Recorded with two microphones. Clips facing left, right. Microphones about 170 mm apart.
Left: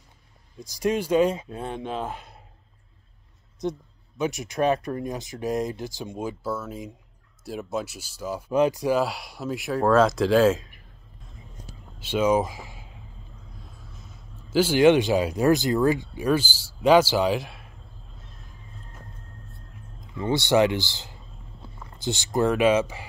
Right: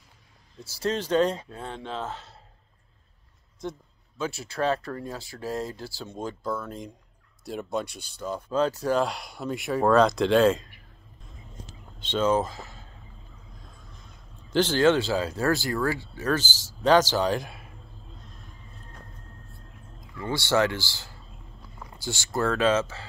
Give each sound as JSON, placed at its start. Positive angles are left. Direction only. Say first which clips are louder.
{"t": 0.6, "sound": "speech", "louder": "left 3 dB", "side_deg": 15}
{"t": 3.6, "sound": "a man's voice", "louder": "left 6 dB", "side_deg": 20}
{"t": 12.0, "sound": "a man's voice", "louder": "left 2 dB", "side_deg": 10}
{"t": 20.2, "sound": "a sound", "louder": "left 4 dB", "side_deg": 20}
{"t": 21.9, "sound": "speech", "louder": "left 5 dB", "side_deg": 20}